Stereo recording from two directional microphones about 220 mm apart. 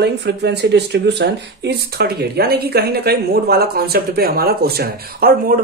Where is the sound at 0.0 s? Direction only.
50° right (ahead or behind).